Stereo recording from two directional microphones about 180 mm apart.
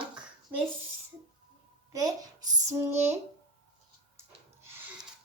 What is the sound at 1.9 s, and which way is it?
A child's voice, 20° right (ahead or behind).